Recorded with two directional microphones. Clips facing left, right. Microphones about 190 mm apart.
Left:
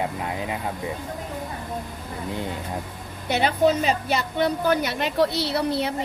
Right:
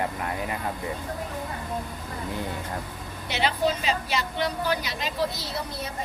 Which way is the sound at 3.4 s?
50° left (ahead or behind).